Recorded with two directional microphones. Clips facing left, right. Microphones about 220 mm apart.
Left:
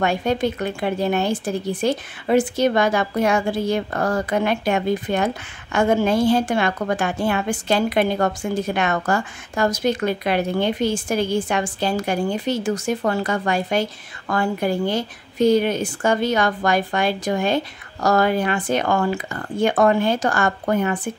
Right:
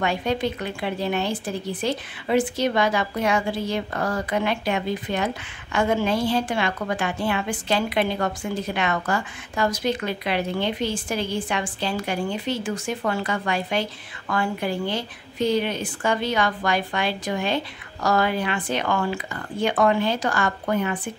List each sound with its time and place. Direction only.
0.0 s speech: 45° left (ahead or behind)